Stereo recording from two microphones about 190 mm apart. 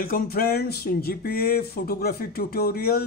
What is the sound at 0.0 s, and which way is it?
Speech, 50° left (ahead or behind).